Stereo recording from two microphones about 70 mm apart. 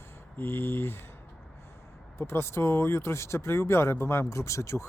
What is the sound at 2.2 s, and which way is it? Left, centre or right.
Speech, left.